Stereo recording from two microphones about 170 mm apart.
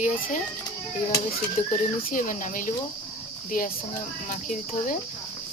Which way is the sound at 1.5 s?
55° left (ahead or behind).